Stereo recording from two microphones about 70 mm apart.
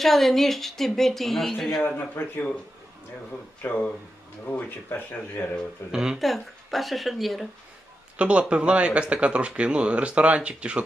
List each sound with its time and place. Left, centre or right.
0.0 s speech: centre
2.0 s speech: left
3.6 s speech: left
5.9 s speech: centre
8.2 s speech: centre